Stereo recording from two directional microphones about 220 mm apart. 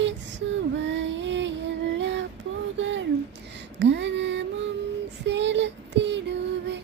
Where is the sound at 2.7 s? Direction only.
55° right (ahead or behind).